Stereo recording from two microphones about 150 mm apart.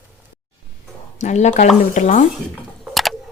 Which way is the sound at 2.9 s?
Centre (ahead or behind).